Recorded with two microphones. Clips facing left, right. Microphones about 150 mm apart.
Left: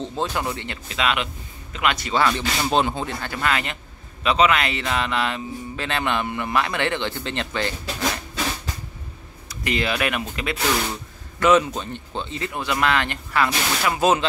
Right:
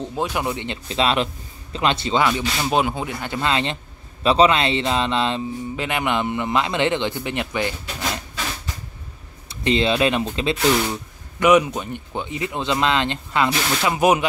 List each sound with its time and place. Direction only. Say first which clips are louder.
0.0 s speech: right 1 dB; 10° right (ahead or behind)
0.8 s speech: right 4 dB; 30° right (ahead or behind)
2.1 s speech: right 1 dB; 15° right (ahead or behind)
3.3 s speech: right 4 dB; 25° right (ahead or behind)
9.5 s speech: right 5 dB; 25° right (ahead or behind)